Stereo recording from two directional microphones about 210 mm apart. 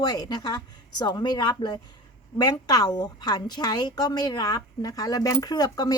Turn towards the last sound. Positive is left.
turn(degrees=20)  # may be behind; listen again after turning